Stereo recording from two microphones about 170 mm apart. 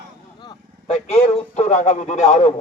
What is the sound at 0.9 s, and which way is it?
Speech, 35° left (ahead or behind).